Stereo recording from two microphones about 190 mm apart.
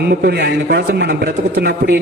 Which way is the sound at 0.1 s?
55° right (ahead or behind).